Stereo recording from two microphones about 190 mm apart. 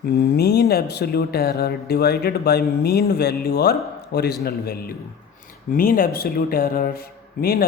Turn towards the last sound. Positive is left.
turn(degrees=55)  # may be behind; listen again after turning